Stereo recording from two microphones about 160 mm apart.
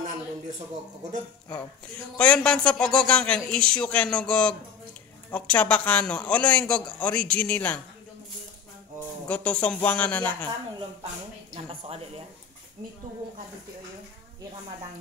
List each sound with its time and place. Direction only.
2.1 s speech: 5° left (ahead or behind)
9.3 s speech: 10° left (ahead or behind)
11.5 s speech: 35° right (ahead or behind)